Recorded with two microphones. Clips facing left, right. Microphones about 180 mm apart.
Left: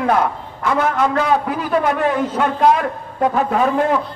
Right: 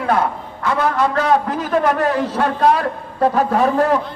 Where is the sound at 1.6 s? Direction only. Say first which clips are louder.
Right 1 dB; 40° right (ahead or behind).